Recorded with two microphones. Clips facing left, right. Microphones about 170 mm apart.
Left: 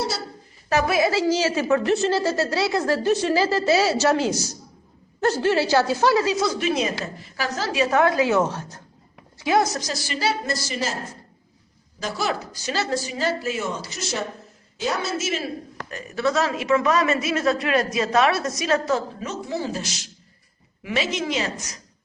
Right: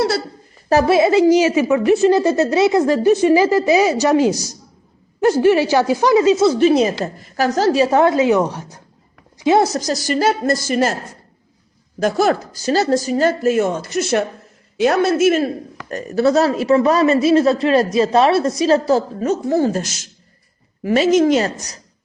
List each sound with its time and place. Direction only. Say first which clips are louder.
0.7 s a woman's voice: right 7 dB; 30° right (ahead or behind); by 8.8 s 15° right (ahead or behind)
9.4 s a woman's voice: right 6 dB; 25° right (ahead or behind)
9.7 s speech: right 10 dB; 40° right (ahead or behind)
11.9 s a man's voice: right 10 dB; 50° right (ahead or behind)
15.9 s a man's voice: right 8 dB; 40° right (ahead or behind)